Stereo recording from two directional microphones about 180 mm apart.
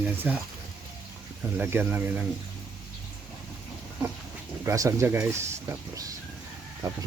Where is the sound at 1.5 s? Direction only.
10° right (ahead or behind).